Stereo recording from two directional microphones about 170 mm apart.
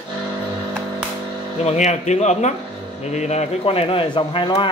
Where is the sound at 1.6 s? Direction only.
40° left (ahead or behind).